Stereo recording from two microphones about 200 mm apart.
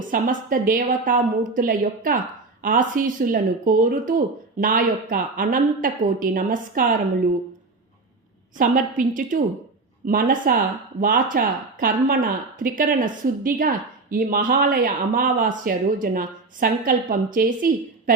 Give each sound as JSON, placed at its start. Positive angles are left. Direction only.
{"t": 0.1, "sound": "speech", "side_deg": -45}
{"t": 8.5, "sound": "a woman's voice", "side_deg": -40}